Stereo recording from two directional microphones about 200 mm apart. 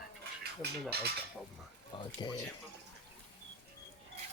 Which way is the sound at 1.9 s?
25° left (ahead or behind).